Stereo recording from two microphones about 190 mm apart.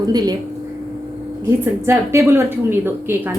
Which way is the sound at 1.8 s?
15° right (ahead or behind).